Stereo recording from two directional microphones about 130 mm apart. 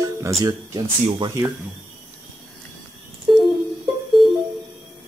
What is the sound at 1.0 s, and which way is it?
Speech, 40° right (ahead or behind).